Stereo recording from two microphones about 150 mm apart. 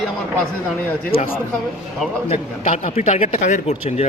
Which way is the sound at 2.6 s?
55° left (ahead or behind).